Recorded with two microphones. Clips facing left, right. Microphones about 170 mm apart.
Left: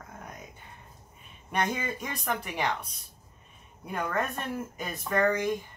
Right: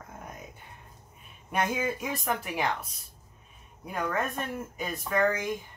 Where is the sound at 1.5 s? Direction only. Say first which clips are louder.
Right 1 dB; 5° right (ahead or behind).